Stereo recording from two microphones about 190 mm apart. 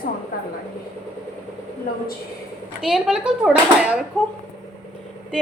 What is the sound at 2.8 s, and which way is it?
A woman's voice, 5° right (ahead or behind).